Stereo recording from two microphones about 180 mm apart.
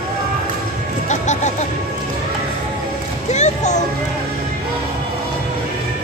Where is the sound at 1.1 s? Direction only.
40° left (ahead or behind).